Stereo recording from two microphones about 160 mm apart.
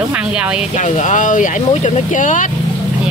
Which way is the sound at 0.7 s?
50° left (ahead or behind).